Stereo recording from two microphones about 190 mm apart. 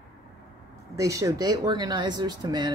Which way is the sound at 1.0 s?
15° right (ahead or behind).